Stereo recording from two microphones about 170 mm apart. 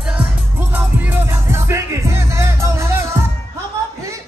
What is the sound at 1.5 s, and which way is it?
Music, 15° right (ahead or behind).